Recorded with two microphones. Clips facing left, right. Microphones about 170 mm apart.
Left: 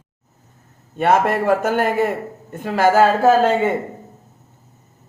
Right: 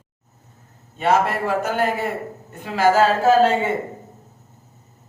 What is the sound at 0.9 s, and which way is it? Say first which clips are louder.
A man's voice: left 3 dB; 50° left (ahead or behind).